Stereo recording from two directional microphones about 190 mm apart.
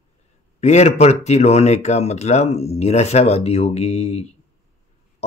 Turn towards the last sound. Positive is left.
turn(degrees=35)  # may be behind; listen again after turning